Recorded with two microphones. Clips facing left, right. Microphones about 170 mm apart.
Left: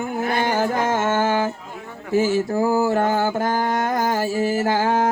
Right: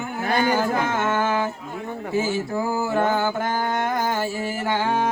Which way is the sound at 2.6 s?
40° left (ahead or behind).